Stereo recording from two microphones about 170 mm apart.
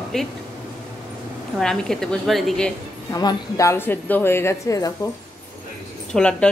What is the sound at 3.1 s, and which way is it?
A man's voice, 20° left (ahead or behind).